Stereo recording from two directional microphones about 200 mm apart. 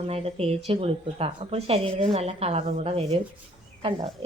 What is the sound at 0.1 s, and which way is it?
A woman's voice, 30° right (ahead or behind).